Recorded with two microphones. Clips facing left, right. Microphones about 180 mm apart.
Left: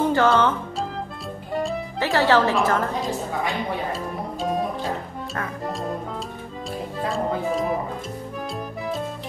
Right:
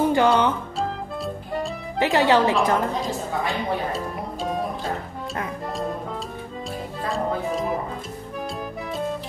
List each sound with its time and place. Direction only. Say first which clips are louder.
0.1 s a woman's voice: even; 15° right (ahead or behind)
1.5 s music: left 4 dB; centre (ahead or behind)
2.0 s a woman's voice: right 1 dB; 20° right (ahead or behind)
3.9 s music: even; centre (ahead or behind)